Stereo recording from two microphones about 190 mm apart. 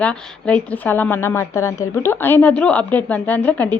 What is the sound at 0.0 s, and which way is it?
Speech, 5° left (ahead or behind).